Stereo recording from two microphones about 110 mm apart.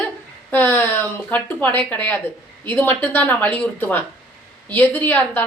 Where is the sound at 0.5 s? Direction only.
20° left (ahead or behind).